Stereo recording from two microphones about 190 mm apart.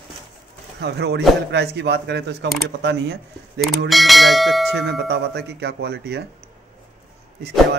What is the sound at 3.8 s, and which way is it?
Speech, centre (ahead or behind).